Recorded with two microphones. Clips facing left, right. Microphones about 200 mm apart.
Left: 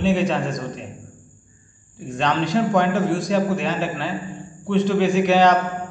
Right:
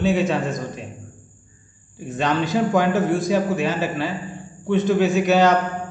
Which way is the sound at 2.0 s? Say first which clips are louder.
Even; 5° right (ahead or behind).